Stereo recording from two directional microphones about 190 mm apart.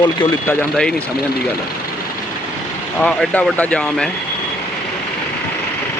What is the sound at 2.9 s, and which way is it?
Speech, 5° left (ahead or behind).